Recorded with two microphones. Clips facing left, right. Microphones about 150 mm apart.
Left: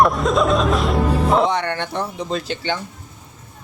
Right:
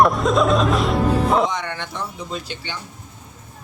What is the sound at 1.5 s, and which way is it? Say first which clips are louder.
Speech: left 6 dB; 60° left (ahead or behind).